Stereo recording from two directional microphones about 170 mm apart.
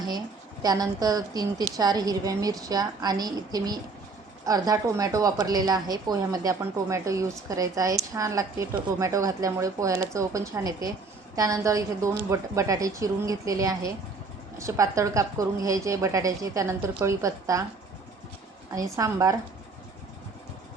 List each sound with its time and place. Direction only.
0.6 s a woman's voice: 20° right (ahead or behind)
18.9 s a woman's voice: 20° right (ahead or behind)